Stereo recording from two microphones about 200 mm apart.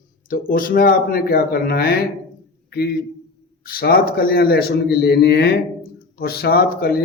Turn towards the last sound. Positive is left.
turn(degrees=50)  # may be behind; listen again after turning